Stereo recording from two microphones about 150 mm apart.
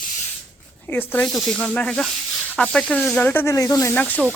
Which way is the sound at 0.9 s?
15° left (ahead or behind).